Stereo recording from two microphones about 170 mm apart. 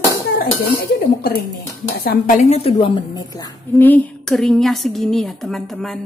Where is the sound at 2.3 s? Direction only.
40° left (ahead or behind).